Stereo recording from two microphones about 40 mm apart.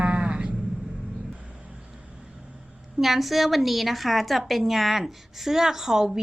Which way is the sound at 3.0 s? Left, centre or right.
Centre.